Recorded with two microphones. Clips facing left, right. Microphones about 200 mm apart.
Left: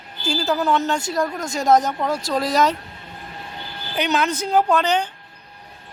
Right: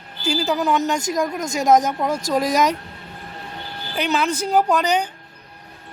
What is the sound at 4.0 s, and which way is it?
Speech, 10° right (ahead or behind).